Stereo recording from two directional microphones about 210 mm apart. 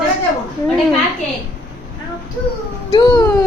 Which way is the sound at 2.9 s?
15° left (ahead or behind).